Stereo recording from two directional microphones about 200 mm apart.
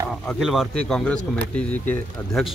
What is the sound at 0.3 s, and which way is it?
Speech, centre (ahead or behind).